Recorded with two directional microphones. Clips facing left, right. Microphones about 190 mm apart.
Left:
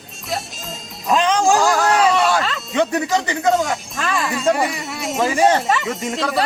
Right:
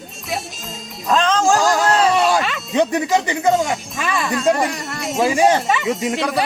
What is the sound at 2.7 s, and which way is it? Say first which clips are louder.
Speech: right 2 dB; 20° right (ahead or behind).